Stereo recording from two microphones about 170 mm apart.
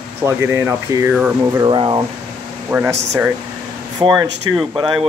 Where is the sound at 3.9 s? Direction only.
25° right (ahead or behind).